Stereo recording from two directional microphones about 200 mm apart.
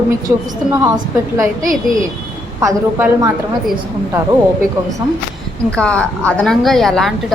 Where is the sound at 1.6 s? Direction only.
40° right (ahead or behind).